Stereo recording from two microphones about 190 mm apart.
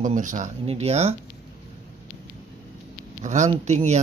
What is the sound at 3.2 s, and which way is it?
Speech, 35° right (ahead or behind).